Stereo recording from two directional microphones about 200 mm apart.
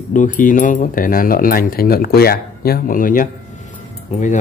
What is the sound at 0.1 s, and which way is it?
Speech, 40° left (ahead or behind).